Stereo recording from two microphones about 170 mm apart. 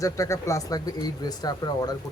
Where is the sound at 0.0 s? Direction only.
20° left (ahead or behind).